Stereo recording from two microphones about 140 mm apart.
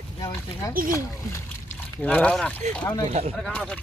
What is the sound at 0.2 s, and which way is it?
Speech, 25° left (ahead or behind).